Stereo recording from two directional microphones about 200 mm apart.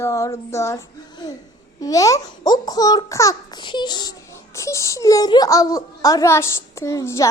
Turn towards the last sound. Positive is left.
turn(degrees=15)  # may be behind; listen again after turning